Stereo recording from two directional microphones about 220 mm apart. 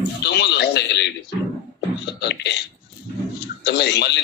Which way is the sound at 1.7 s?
50° left (ahead or behind).